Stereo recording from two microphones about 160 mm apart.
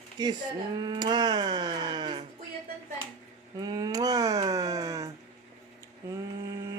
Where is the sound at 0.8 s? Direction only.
25° right (ahead or behind).